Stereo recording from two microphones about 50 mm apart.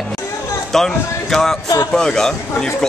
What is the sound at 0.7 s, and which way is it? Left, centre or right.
A man's voice, centre.